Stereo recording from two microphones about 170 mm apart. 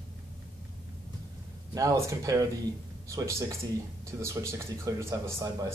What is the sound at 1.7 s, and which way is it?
Speech, 20° right (ahead or behind).